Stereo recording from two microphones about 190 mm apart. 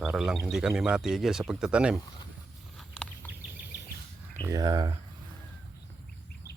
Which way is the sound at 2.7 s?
5° left (ahead or behind).